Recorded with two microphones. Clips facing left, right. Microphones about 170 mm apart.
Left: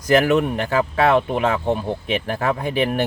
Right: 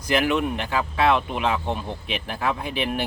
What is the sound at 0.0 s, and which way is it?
Speech, 45° left (ahead or behind).